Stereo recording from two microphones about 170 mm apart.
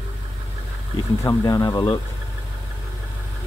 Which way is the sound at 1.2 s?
20° left (ahead or behind).